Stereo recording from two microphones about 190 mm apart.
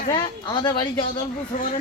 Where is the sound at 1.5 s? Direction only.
40° left (ahead or behind).